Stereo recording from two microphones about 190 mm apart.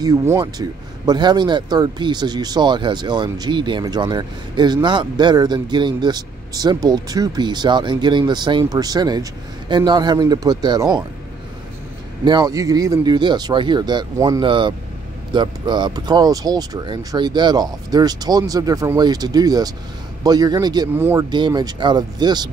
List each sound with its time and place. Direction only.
0.0 s speech: 15° right (ahead or behind)
12.3 s speech: 20° right (ahead or behind)
21.3 s speech: 20° right (ahead or behind)